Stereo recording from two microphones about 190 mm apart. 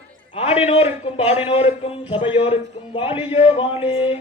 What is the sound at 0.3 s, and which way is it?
Chant, 30° left (ahead or behind).